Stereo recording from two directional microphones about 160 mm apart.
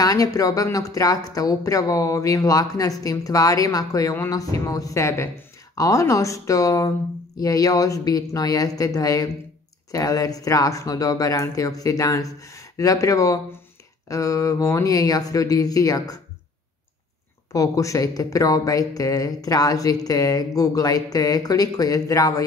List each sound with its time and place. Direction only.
0.0 s speech: 20° left (ahead or behind)
17.5 s speech: 20° left (ahead or behind)